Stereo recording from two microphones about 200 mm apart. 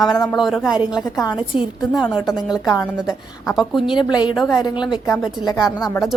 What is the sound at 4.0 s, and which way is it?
Speech, 20° left (ahead or behind).